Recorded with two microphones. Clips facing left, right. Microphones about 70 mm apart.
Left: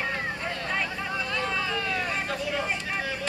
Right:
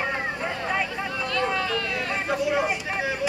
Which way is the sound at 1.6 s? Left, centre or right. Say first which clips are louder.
Right 3 dB; centre.